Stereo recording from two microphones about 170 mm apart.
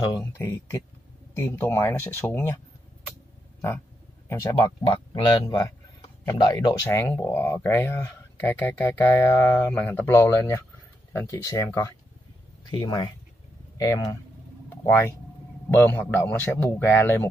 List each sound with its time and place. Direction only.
0.1 s speech: 15° left (ahead or behind)
4.3 s speech: 20° left (ahead or behind)
15.9 s speech: 10° left (ahead or behind)